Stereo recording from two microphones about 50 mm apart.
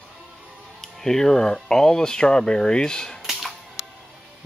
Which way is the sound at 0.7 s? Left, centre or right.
Centre.